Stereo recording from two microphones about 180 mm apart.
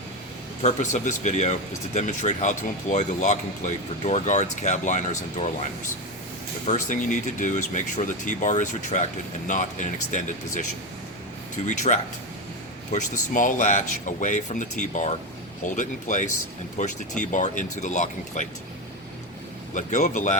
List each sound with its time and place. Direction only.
0.6 s speech: 45° left (ahead or behind)
6.7 s speech: 45° left (ahead or behind)
19.7 s speech: 45° left (ahead or behind)